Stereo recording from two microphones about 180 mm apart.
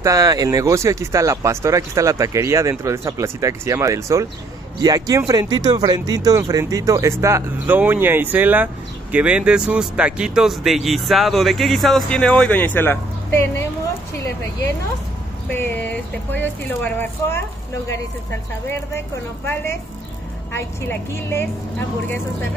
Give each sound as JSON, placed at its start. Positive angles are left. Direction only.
{"t": 0.0, "sound": "speech", "side_deg": -20}
{"t": 15.5, "sound": "speech", "side_deg": 10}
{"t": 19.4, "sound": "speech", "side_deg": 10}